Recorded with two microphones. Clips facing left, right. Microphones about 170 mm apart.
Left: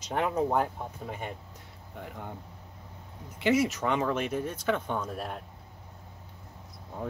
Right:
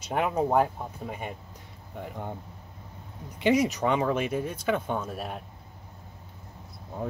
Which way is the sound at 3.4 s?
15° right (ahead or behind).